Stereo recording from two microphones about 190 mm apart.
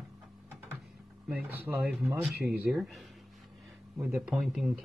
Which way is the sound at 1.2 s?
5° right (ahead or behind).